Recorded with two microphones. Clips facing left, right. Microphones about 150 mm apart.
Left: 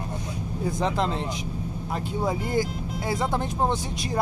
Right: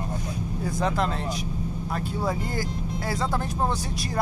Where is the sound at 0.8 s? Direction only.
20° left (ahead or behind).